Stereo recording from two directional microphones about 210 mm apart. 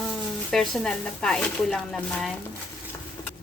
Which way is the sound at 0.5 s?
Centre (ahead or behind).